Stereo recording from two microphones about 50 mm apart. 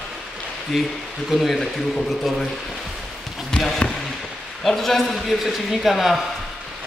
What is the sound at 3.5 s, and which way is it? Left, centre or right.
Speech, centre.